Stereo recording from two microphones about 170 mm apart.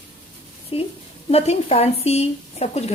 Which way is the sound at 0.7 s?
35° left (ahead or behind).